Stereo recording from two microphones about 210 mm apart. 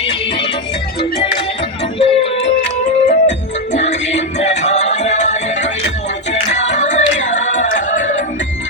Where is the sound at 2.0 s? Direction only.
25° left (ahead or behind).